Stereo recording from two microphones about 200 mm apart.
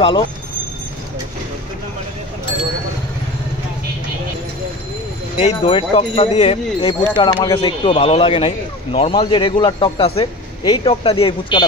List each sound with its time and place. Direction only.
5.4 s speech: 30° left (ahead or behind)